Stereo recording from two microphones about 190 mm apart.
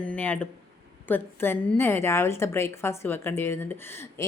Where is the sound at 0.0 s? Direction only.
5° left (ahead or behind).